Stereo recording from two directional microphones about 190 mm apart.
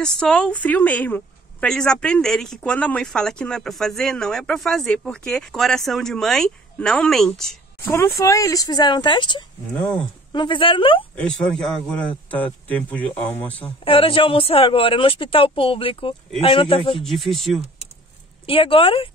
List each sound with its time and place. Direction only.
0.0 s a woman's voice: 5° left (ahead or behind); by 9.4 s 25° left (ahead or behind)
9.8 s speech: 5° left (ahead or behind)
10.3 s speech: 25° left (ahead or behind)
11.1 s a woman's voice: 5° left (ahead or behind)
13.8 s speech: 30° left (ahead or behind)
17.0 s a woman's voice: centre (ahead or behind)
18.4 s speech: 30° left (ahead or behind)